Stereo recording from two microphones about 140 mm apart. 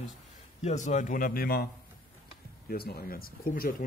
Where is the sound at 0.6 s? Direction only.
60° left (ahead or behind); by 1.7 s 90° left.